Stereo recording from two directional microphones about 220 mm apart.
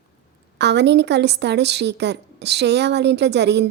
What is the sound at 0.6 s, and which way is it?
A woman's voice, 50° right (ahead or behind).